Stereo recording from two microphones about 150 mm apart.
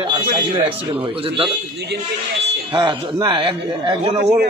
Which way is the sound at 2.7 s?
30° right (ahead or behind).